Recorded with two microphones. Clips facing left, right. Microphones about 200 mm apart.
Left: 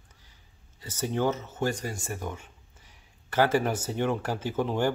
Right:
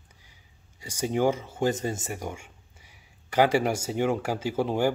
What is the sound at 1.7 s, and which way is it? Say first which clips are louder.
A man's voice: right 4 dB; 25° right (ahead or behind).